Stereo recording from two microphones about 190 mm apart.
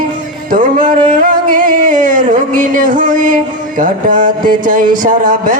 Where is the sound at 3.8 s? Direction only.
45° right (ahead or behind).